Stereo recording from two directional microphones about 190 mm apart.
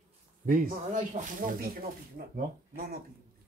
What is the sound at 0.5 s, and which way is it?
Speech, 45° right (ahead or behind).